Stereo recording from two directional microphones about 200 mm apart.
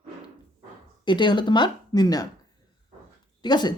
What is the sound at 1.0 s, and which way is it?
Speech, 25° left (ahead or behind).